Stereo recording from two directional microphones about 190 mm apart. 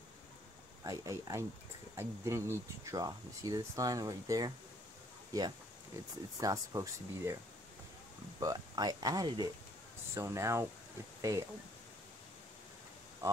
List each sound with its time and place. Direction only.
0.8 s speech: 15° right (ahead or behind)
6.4 s speech: 20° right (ahead or behind)
8.4 s speech: 20° right (ahead or behind)
13.2 s a sound: 15° right (ahead or behind)